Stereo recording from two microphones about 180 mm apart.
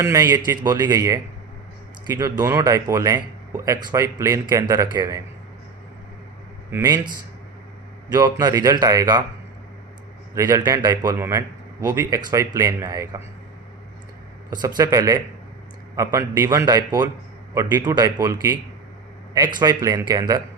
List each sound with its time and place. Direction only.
0.0 s speech: 15° right (ahead or behind)
2.4 s speech: 20° right (ahead or behind)
6.7 s speech: 15° right (ahead or behind)
8.1 s speech: 20° right (ahead or behind)
10.3 s speech: 20° right (ahead or behind)
14.5 s speech: 20° right (ahead or behind)